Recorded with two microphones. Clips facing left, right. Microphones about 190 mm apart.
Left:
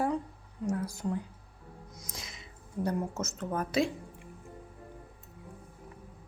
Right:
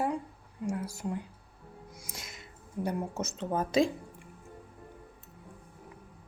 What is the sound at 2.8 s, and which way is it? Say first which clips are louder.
Speech: left 1 dB; 15° right (ahead or behind).